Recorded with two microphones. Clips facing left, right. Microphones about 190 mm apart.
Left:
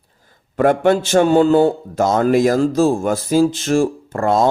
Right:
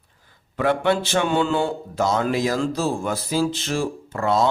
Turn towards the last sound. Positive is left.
turn(degrees=45)  # may be behind; listen again after turning